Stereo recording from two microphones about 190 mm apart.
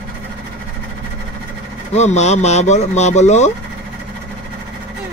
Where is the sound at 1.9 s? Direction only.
35° left (ahead or behind).